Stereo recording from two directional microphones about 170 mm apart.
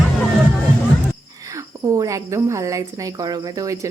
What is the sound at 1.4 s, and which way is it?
Speech, 20° right (ahead or behind).